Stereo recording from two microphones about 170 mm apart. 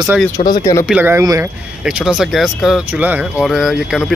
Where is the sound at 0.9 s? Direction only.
10° right (ahead or behind).